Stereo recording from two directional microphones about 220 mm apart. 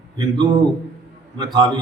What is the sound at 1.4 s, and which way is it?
Speech, 20° right (ahead or behind).